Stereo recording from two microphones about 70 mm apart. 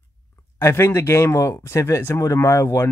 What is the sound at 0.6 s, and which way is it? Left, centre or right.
Speech, left.